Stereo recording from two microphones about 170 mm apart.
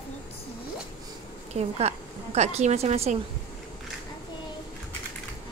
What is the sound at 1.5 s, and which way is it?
A woman's voice, 40° right (ahead or behind).